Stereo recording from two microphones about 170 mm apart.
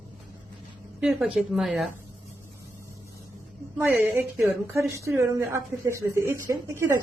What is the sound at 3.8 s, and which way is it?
A woman's voice, 15° right (ahead or behind).